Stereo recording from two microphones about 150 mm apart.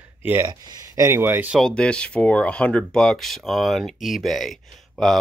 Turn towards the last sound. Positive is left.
turn(degrees=0)  # may be behind; listen again after turning